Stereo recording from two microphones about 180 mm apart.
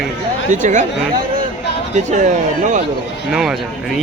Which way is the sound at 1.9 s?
40° right (ahead or behind).